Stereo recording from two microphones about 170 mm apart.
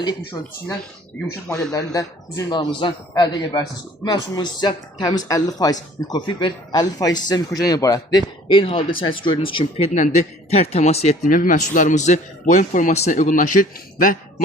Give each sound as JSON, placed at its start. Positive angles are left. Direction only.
{"t": 0.4, "sound": "a man's voice", "side_deg": 20}
{"t": 1.7, "sound": "a man's voice", "side_deg": 20}